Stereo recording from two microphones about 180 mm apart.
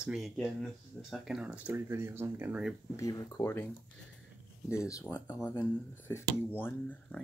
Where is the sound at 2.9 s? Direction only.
20° left (ahead or behind).